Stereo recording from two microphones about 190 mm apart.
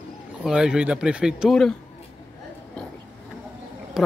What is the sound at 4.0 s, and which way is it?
Speech, 5° right (ahead or behind).